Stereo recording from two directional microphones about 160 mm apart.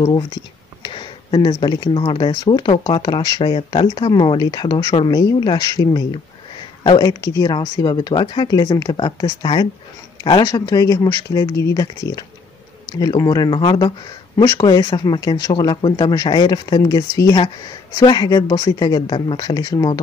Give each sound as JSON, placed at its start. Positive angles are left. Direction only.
{"t": 0.0, "sound": "speech", "side_deg": 30}
{"t": 13.0, "sound": "speech", "side_deg": 25}